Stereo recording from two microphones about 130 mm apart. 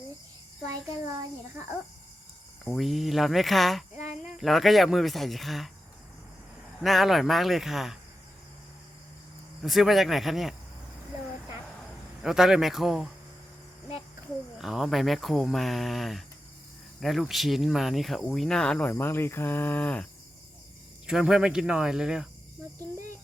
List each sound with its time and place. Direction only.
2.6 s speech: centre (ahead or behind)
3.9 s cricket: 70° left (ahead or behind)
4.4 s speech: centre (ahead or behind)
6.7 s speech: centre (ahead or behind)
9.6 s speech: centre (ahead or behind)
12.2 s speech: 5° right (ahead or behind)
14.6 s speech: centre (ahead or behind)
21.1 s speech: 5° right (ahead or behind)